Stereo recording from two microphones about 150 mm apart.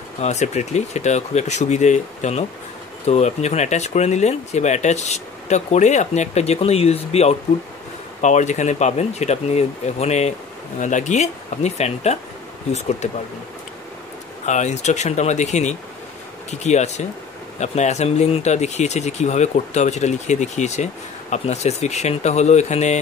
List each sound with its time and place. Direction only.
0.2 s speech: 50° left (ahead or behind)
14.4 s speech: 50° left (ahead or behind)